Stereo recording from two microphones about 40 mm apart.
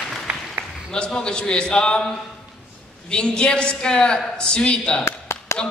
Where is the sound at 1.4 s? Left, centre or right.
Left.